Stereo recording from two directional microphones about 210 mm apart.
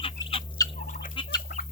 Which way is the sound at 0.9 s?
40° left (ahead or behind).